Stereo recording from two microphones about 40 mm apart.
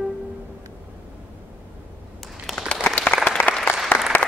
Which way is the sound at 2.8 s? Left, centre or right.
Left.